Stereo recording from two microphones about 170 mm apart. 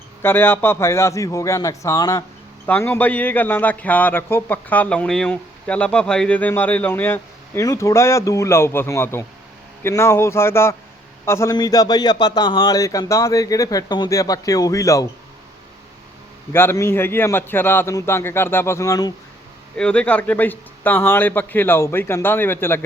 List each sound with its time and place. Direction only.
0.2 s a man's voice: 10° left (ahead or behind)
16.5 s a man's voice: 15° left (ahead or behind)
19.7 s a man's voice: 5° left (ahead or behind)